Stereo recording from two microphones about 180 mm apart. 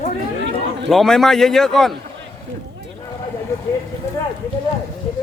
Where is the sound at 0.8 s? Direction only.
Centre (ahead or behind).